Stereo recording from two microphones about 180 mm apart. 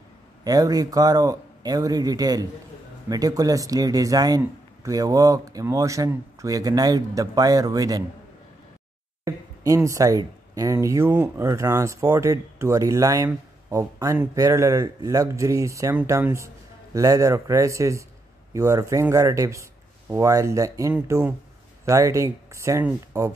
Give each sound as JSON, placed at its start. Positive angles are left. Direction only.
{"t": 0.4, "sound": "speech", "side_deg": -20}
{"t": 9.2, "sound": "speech", "side_deg": -20}